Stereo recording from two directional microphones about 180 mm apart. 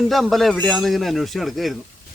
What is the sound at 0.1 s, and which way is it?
A man's voice, centre (ahead or behind).